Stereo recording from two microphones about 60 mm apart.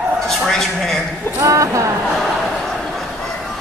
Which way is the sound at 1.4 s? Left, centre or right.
Right.